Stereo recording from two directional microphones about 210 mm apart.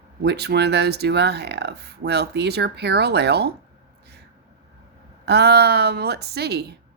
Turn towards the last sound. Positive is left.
turn(degrees=-50)  # may be behind; listen again after turning